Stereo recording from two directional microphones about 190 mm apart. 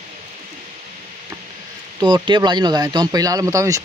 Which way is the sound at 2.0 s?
20° right (ahead or behind).